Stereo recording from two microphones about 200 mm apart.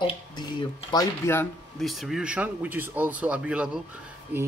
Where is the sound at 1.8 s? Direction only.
Centre (ahead or behind).